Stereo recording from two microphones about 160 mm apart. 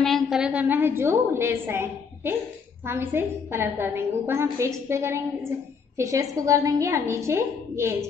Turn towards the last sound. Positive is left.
turn(degrees=-15)  # may be behind; listen again after turning